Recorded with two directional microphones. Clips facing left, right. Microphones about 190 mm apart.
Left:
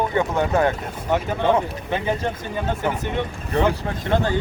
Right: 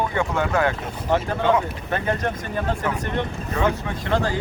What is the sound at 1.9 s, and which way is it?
Speech, 5° left (ahead or behind).